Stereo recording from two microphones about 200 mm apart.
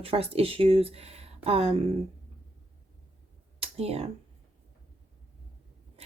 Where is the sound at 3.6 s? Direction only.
30° right (ahead or behind).